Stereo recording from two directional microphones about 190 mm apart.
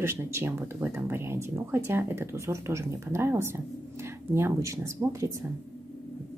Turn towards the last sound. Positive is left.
turn(degrees=-15)  # may be behind; listen again after turning